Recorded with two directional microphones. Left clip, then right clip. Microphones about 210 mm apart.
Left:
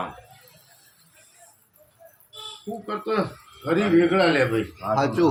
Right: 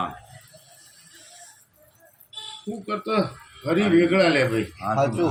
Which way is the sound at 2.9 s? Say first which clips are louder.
Right 1 dB; 20° left (ahead or behind).